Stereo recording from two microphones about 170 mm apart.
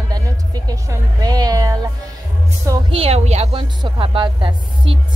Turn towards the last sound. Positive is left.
turn(degrees=-30)  # may be behind; listen again after turning